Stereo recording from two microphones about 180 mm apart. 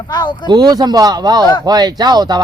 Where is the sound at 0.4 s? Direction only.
20° right (ahead or behind).